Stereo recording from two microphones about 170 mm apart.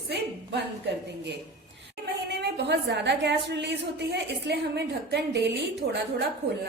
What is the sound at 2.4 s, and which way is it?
A woman's voice, 90° right.